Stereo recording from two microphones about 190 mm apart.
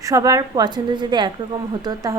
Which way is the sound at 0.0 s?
15° right (ahead or behind).